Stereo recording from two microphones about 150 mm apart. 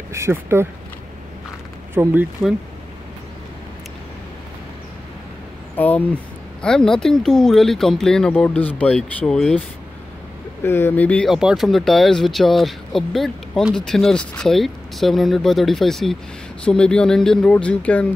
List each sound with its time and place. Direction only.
0.1 s speech: 15° right (ahead or behind)
2.0 s speech: 15° right (ahead or behind)
5.8 s speech: 10° left (ahead or behind)
10.6 s speech: 15° left (ahead or behind)